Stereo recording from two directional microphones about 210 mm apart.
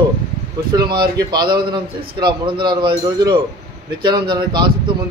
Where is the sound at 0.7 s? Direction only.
20° right (ahead or behind).